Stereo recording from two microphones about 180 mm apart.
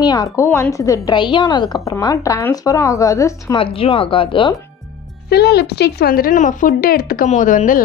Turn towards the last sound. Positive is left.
turn(degrees=45)  # may be behind; listen again after turning